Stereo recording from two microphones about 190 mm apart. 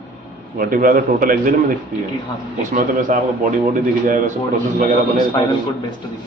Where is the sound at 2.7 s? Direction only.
45° right (ahead or behind).